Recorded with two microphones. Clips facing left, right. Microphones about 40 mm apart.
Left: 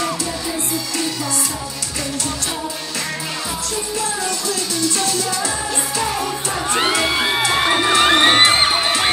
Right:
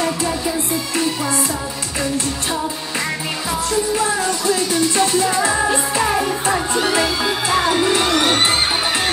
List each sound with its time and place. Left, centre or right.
4.5 s music: right
6.7 s music: left